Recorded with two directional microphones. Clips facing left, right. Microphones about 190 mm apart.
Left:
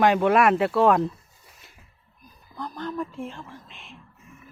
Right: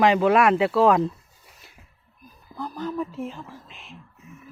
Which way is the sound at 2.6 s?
10° right (ahead or behind).